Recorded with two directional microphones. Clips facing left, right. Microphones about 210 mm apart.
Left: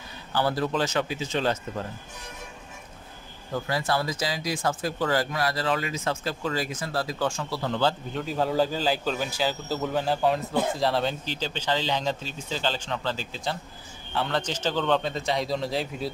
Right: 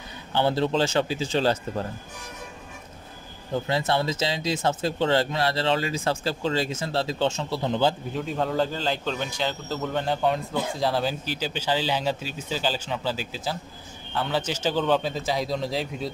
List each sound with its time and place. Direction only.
0.3 s speech: 25° right (ahead or behind)
3.5 s speech: 25° right (ahead or behind)
8.1 s a man's voice: centre (ahead or behind)